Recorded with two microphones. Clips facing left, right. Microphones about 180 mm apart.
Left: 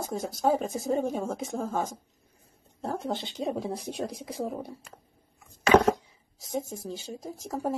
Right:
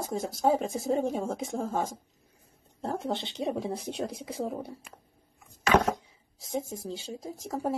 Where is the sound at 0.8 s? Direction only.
20° right (ahead or behind).